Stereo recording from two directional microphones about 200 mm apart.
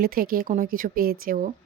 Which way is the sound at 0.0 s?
45° right (ahead or behind).